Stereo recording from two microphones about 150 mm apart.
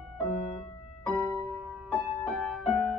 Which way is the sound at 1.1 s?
5° right (ahead or behind).